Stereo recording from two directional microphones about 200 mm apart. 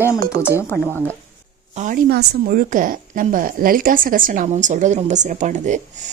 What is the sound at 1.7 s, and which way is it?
A woman's voice, 40° right (ahead or behind).